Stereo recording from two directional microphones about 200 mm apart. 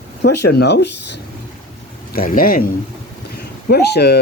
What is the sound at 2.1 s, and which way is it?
Speech, 45° left (ahead or behind).